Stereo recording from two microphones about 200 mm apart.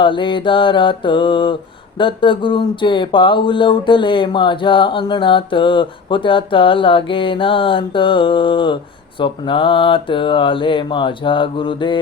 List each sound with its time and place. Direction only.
0.0 s speech: 25° left (ahead or behind)